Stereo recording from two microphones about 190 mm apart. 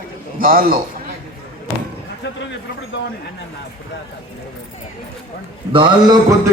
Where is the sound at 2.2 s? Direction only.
65° left (ahead or behind).